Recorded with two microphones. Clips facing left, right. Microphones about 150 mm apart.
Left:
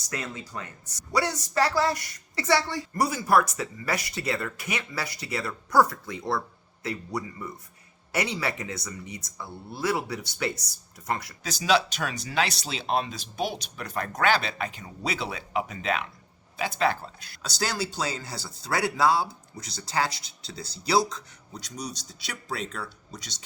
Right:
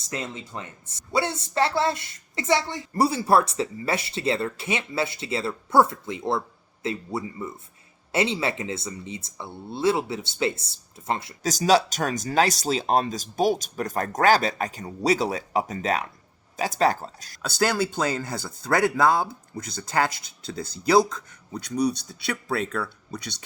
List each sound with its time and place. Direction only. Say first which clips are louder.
0.0 s speech: right 2 dB; 25° right (ahead or behind)
11.4 s speech: right 4 dB; 40° right (ahead or behind)
17.4 s speech: right 6 dB; 55° right (ahead or behind)